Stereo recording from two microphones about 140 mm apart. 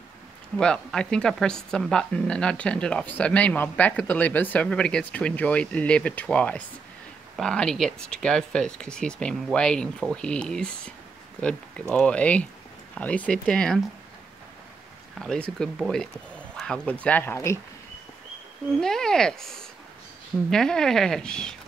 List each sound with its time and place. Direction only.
0.6 s speech: 5° left (ahead or behind)
11.9 s speech: 10° left (ahead or behind)
15.1 s speech: 5° left (ahead or behind)
18.8 s speech: 5° left (ahead or behind)